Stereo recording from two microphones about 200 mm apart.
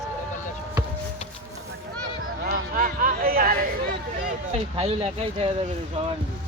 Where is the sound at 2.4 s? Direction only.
45° right (ahead or behind).